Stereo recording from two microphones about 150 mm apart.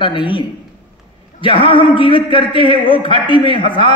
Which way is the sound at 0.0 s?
35° left (ahead or behind).